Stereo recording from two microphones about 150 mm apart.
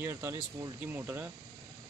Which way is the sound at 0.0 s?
20° right (ahead or behind).